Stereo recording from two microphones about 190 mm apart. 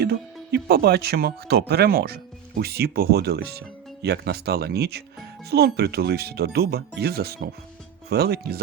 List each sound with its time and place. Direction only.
0.5 s speech: 55° right (ahead or behind)